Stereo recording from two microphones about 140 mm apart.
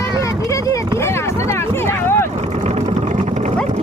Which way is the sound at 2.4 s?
50° right (ahead or behind).